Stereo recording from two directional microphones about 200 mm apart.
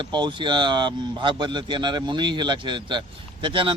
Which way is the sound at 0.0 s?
25° right (ahead or behind).